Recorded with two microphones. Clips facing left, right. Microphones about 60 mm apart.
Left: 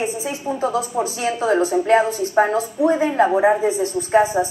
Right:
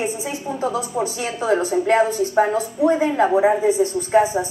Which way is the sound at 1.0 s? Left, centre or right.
Centre.